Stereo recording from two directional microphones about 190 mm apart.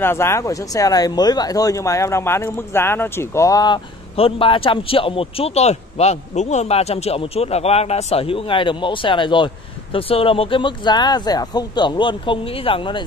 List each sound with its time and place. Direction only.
0.0 s speech: 15° left (ahead or behind)